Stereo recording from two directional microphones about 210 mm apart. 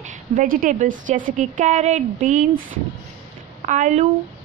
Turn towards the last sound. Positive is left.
turn(degrees=-35)  # may be behind; listen again after turning